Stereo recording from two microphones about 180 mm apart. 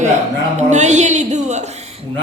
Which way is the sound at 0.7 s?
40° right (ahead or behind).